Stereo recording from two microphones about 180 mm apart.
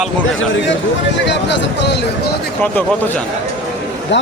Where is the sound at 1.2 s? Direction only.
75° left (ahead or behind).